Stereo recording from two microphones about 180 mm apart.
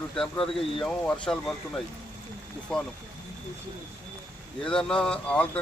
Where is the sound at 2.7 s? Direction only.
5° left (ahead or behind).